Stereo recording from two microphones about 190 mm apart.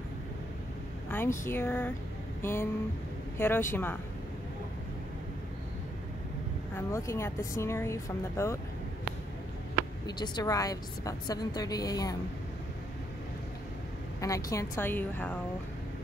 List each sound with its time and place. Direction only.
1.1 s speech: 15° left (ahead or behind)
6.7 s speech: 15° left (ahead or behind)
10.0 s a woman's voice: 20° left (ahead or behind)
14.2 s speech: 15° left (ahead or behind)